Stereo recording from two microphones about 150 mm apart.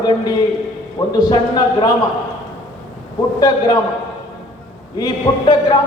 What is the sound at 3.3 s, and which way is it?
Speech, 30° left (ahead or behind).